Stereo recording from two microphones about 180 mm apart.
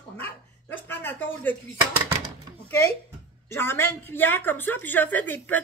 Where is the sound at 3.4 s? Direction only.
15° left (ahead or behind).